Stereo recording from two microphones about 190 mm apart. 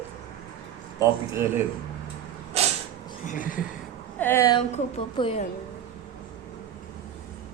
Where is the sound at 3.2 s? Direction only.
45° left (ahead or behind).